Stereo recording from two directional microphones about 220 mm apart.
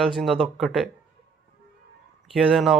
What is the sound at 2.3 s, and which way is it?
Speech, centre (ahead or behind).